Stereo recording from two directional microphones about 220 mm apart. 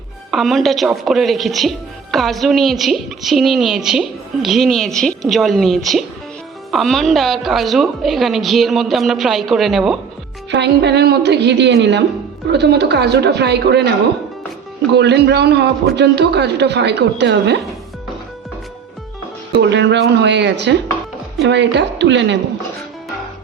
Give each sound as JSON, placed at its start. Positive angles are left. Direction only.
{"t": 0.3, "sound": "a woman's voice", "side_deg": 0}
{"t": 10.5, "sound": "a man's voice", "side_deg": -50}
{"t": 14.9, "sound": "a man's voice", "side_deg": -50}
{"t": 19.5, "sound": "a man's voice", "side_deg": -50}